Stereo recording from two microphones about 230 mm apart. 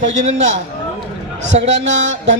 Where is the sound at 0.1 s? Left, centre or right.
Right.